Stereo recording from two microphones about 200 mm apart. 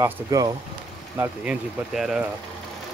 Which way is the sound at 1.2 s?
5° right (ahead or behind).